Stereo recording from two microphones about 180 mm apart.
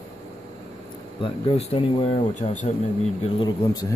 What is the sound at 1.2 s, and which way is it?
Speech, 30° left (ahead or behind).